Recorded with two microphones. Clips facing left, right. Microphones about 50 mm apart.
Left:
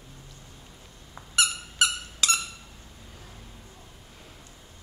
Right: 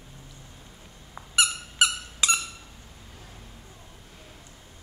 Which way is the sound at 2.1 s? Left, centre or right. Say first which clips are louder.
Right 1 dB; centre.